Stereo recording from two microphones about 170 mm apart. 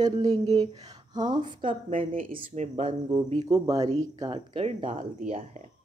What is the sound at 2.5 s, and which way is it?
Speech, 45° right (ahead or behind).